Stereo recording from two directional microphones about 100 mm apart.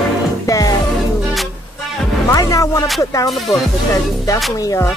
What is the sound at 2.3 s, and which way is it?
Music, 35° left (ahead or behind).